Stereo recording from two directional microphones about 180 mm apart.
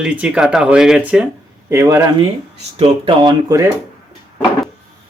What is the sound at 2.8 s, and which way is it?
Speech, 30° right (ahead or behind).